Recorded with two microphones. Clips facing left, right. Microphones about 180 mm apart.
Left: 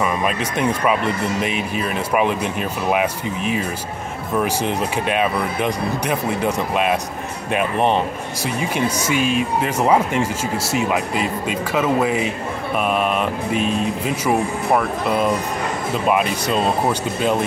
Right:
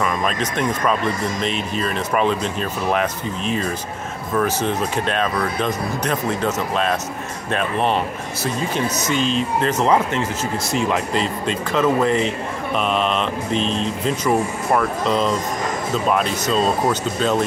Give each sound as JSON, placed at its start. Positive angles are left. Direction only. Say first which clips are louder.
{"t": 0.0, "sound": "speech", "louder": "left 1 dB", "side_deg": 10}